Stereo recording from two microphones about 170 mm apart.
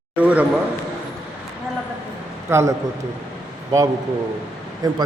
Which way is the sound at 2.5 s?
15° right (ahead or behind).